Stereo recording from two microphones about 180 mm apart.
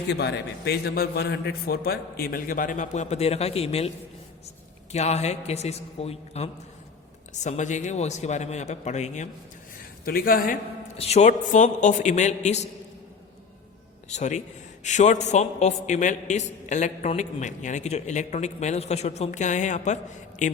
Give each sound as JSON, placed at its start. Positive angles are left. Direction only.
{"t": 0.1, "sound": "a man's voice", "side_deg": 65}
{"t": 10.1, "sound": "a man's voice", "side_deg": 55}
{"t": 10.9, "sound": "a man's voice", "side_deg": 35}
{"t": 14.1, "sound": "a man's voice", "side_deg": 40}